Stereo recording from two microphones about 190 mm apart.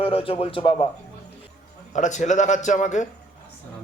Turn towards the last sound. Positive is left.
turn(degrees=40)  # may be behind; listen again after turning